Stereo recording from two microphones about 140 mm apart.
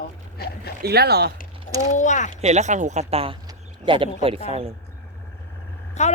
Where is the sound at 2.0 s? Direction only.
60° left (ahead or behind).